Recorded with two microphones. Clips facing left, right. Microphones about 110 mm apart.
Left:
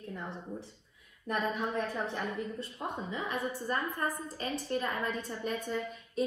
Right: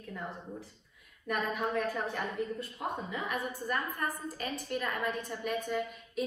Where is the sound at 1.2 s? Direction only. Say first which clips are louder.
Even; 30° left (ahead or behind).